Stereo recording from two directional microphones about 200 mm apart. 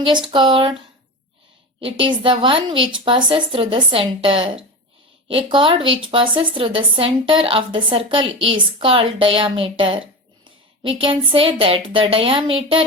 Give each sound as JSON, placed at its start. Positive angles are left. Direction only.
{"t": 0.3, "sound": "a woman's voice", "side_deg": -25}
{"t": 1.8, "sound": "a woman's voice", "side_deg": -25}